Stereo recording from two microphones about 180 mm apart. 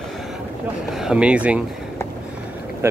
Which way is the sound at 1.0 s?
5° right (ahead or behind).